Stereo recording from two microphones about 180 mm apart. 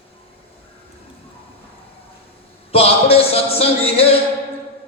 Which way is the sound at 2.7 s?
35° left (ahead or behind).